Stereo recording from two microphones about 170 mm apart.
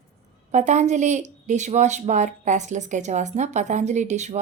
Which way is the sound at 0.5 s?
45° right (ahead or behind).